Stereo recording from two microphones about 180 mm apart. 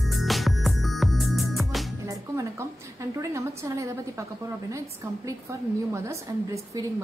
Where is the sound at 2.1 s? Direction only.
15° right (ahead or behind).